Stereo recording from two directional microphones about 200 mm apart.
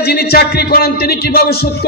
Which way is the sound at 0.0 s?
55° left (ahead or behind).